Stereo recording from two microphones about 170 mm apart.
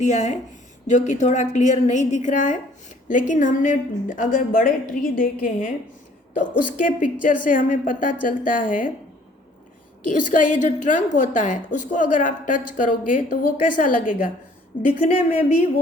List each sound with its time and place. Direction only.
0.0 s a woman's voice: 45° left (ahead or behind)
10.1 s a woman's voice: 50° left (ahead or behind)